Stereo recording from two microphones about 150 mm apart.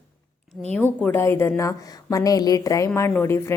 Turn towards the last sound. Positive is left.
turn(degrees=15)  # may be behind; listen again after turning